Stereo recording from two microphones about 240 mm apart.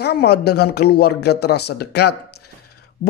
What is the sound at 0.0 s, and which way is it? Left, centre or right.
Speech, left.